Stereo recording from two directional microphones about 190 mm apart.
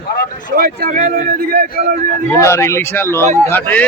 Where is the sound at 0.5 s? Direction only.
50° right (ahead or behind).